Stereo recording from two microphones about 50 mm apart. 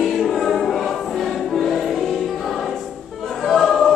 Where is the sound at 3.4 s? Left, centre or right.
Centre.